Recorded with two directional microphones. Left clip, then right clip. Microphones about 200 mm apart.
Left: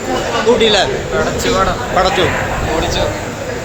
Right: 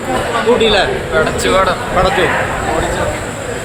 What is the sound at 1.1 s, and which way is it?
Speech, 45° right (ahead or behind).